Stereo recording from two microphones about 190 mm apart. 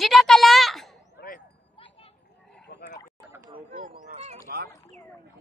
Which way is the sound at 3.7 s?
50° right (ahead or behind).